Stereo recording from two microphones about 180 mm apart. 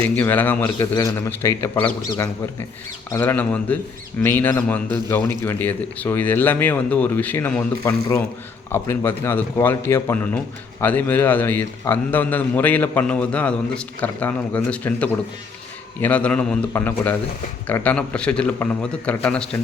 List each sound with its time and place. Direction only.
0.2 s a man's voice: 10° left (ahead or behind)